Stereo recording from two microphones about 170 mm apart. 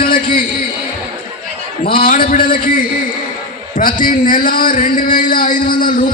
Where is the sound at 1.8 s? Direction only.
55° left (ahead or behind).